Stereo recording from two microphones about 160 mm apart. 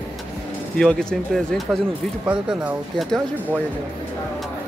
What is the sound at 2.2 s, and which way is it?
Speech, 10° right (ahead or behind).